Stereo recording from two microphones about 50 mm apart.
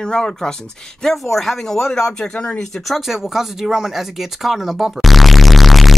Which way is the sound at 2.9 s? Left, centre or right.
Centre.